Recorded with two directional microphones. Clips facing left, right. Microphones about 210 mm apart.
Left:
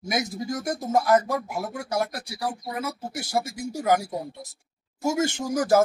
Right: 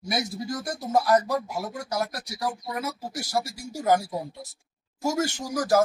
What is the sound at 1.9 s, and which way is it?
Speech, 25° left (ahead or behind).